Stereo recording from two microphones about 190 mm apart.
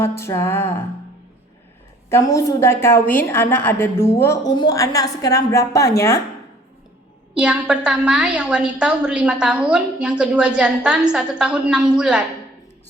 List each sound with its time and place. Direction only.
0.2 s a woman's voice: 15° left (ahead or behind)
2.0 s a woman's voice: 15° left (ahead or behind)
7.3 s a woman's voice: 5° right (ahead or behind)